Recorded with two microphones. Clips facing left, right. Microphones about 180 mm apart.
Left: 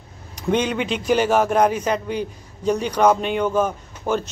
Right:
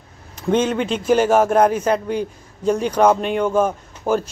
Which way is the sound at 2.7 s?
5° right (ahead or behind).